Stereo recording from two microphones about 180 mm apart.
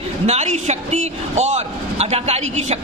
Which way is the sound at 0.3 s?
40° right (ahead or behind).